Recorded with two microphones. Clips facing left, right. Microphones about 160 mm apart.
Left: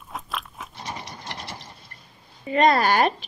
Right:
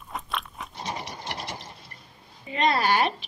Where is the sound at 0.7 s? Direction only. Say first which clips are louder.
Right 2 dB; 20° right (ahead or behind).